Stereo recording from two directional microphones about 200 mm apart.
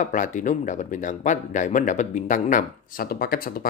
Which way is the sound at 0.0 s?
40° left (ahead or behind).